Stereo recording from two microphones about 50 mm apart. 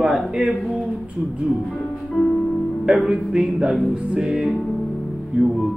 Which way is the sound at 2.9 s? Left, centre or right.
Centre.